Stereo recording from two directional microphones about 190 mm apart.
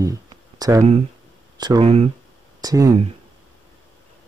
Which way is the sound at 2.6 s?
20° right (ahead or behind).